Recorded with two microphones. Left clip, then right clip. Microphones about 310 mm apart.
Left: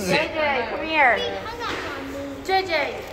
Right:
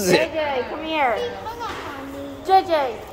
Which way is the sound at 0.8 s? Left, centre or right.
Right.